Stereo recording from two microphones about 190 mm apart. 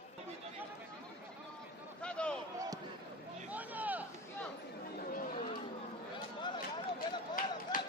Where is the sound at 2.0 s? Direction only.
5° left (ahead or behind).